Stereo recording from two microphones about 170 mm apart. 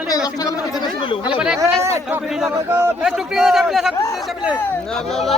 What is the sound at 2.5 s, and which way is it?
Speech, 15° right (ahead or behind).